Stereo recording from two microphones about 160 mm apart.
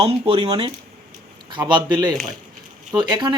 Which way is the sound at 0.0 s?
35° right (ahead or behind).